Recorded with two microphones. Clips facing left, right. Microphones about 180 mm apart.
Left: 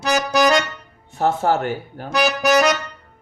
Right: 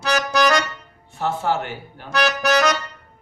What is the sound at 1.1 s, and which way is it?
Speech, 45° left (ahead or behind).